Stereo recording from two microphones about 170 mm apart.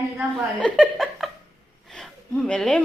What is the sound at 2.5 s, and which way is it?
Speech, 5° left (ahead or behind).